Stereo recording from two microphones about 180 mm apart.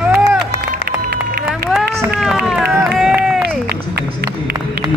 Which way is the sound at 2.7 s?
15° right (ahead or behind).